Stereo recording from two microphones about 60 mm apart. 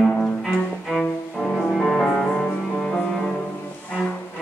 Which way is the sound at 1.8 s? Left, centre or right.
Centre.